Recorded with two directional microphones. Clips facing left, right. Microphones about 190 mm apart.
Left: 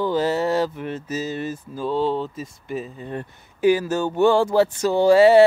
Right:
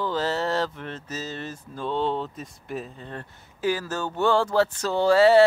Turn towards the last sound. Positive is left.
turn(degrees=15)  # may be behind; listen again after turning